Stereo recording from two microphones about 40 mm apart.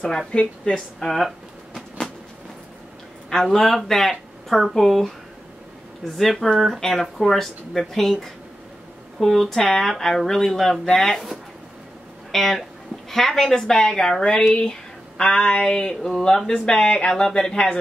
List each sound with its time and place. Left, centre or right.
0.3 s speech: left
0.7 s a sound: centre
3.4 s speech: centre
12.3 s speech: centre